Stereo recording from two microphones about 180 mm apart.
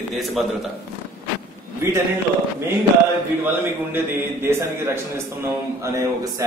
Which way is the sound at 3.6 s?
10° right (ahead or behind).